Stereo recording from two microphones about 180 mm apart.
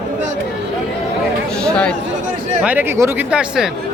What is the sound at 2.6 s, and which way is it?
Speech, 10° right (ahead or behind).